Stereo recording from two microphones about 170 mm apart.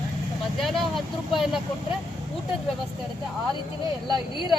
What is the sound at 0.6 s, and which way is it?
Speech, centre (ahead or behind).